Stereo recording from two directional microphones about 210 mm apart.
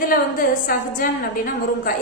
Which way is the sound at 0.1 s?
45° left (ahead or behind).